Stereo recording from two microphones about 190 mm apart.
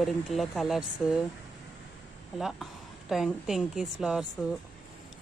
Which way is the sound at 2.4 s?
Centre (ahead or behind).